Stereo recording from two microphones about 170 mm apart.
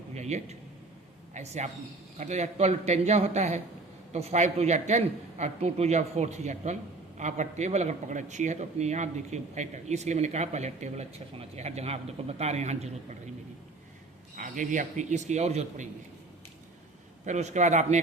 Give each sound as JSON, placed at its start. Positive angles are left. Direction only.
{"t": 0.1, "sound": "a sound", "side_deg": -40}
{"t": 1.3, "sound": "a man's voice", "side_deg": -40}
{"t": 14.3, "sound": "a man's voice", "side_deg": -50}
{"t": 17.2, "sound": "a man's voice", "side_deg": -45}